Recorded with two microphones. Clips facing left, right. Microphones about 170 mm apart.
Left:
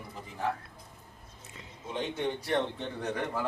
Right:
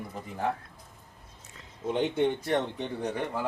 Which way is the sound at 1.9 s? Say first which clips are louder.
Right 6 dB; 60° right (ahead or behind).